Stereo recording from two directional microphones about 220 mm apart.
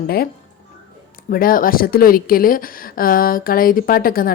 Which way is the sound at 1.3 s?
40° left (ahead or behind).